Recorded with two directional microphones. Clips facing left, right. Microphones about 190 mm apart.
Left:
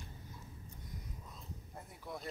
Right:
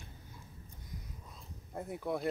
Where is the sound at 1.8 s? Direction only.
60° right (ahead or behind).